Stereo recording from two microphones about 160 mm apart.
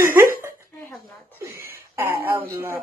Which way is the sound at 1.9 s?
15° right (ahead or behind).